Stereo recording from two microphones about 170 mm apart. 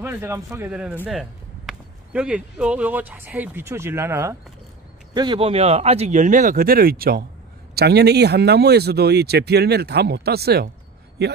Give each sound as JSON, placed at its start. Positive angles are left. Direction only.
{"t": 0.0, "sound": "speech", "side_deg": -15}
{"t": 5.1, "sound": "speech", "side_deg": -25}
{"t": 7.7, "sound": "speech", "side_deg": -70}